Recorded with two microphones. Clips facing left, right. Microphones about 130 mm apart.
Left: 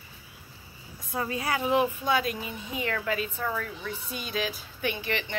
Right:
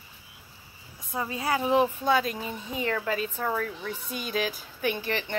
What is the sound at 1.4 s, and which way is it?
A woman's voice, 30° right (ahead or behind).